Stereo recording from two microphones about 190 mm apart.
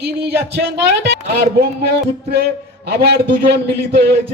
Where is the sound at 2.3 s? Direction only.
60° right (ahead or behind).